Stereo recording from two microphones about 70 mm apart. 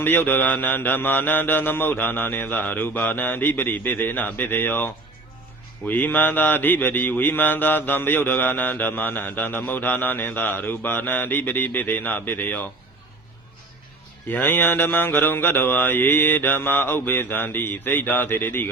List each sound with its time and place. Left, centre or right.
0.0 s mantra: left
5.9 s mantra: left
14.3 s mantra: left